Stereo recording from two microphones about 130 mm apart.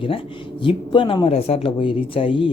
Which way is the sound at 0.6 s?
40° left (ahead or behind).